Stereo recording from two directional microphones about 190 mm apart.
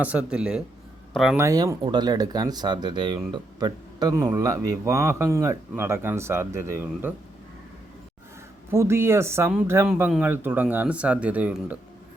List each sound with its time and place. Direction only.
0.0 s speech: 5° right (ahead or behind)
1.4 s speech: 15° right (ahead or behind)
8.7 s speech: 15° right (ahead or behind)